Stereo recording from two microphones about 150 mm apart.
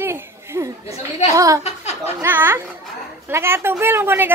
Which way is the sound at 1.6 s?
45° left (ahead or behind).